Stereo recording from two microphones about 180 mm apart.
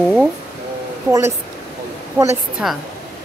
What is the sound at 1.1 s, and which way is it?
Speech, 15° right (ahead or behind).